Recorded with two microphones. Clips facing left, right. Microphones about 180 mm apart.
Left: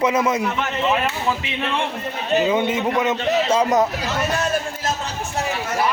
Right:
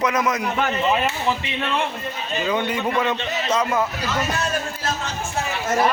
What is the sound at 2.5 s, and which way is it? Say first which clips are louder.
A man's voice: left 3 dB; 20° left (ahead or behind).